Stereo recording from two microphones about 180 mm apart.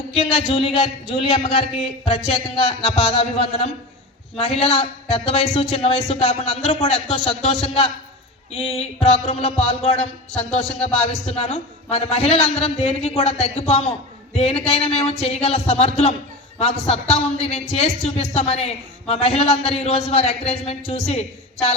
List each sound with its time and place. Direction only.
0.3 s speech: 30° left (ahead or behind)